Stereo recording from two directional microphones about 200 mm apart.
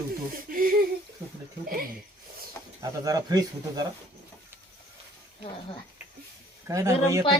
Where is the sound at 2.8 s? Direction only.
20° right (ahead or behind).